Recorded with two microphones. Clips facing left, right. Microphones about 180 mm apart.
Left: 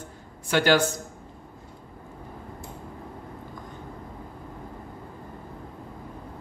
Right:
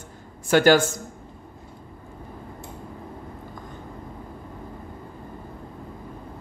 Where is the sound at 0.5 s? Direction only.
45° right (ahead or behind).